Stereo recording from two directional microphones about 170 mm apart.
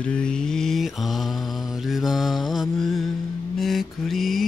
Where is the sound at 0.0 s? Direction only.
5° left (ahead or behind).